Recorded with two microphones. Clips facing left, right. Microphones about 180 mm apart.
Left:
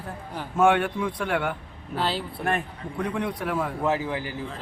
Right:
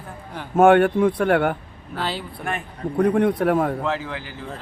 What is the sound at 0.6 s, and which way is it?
Speech, 55° right (ahead or behind).